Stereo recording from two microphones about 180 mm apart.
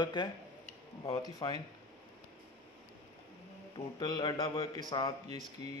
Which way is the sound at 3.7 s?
25° left (ahead or behind).